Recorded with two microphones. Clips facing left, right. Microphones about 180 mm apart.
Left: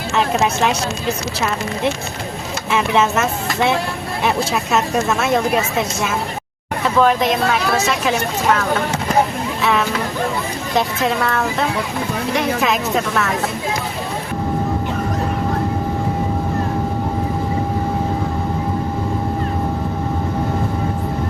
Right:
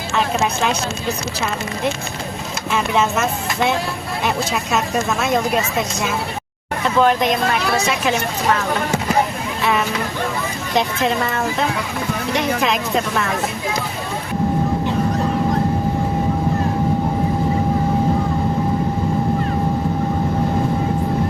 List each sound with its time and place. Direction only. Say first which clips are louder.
2.9 s a woman's voice: left 2 dB; 5° left (ahead or behind)
6.8 s a woman's voice: left 1 dB; centre (ahead or behind)
9.6 s a sound: left 1 dB; centre (ahead or behind)
12.3 s a woman's voice: left 1 dB; 5° left (ahead or behind)